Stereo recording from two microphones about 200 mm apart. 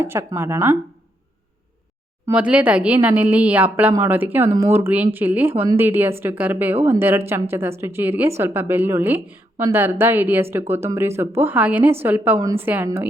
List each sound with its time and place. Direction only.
0.0 s speech: 10° right (ahead or behind)
2.2 s speech: 5° right (ahead or behind)